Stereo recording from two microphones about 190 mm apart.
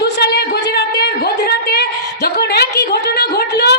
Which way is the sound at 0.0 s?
60° left (ahead or behind).